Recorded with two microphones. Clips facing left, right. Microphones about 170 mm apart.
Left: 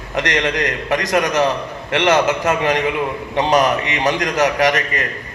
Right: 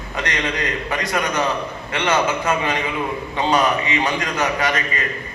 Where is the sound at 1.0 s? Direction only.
85° left.